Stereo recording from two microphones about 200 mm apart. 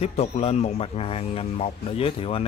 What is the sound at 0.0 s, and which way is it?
A man's voice, 30° left (ahead or behind).